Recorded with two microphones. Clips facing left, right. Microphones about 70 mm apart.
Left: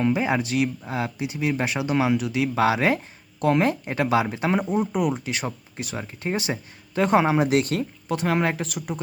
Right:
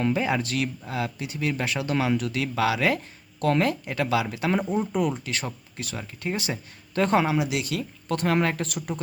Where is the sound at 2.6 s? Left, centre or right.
Left.